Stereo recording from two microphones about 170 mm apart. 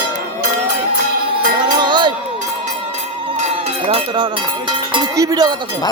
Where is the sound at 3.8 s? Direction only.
30° right (ahead or behind).